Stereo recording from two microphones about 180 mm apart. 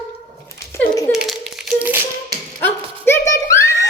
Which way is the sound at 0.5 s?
15° left (ahead or behind).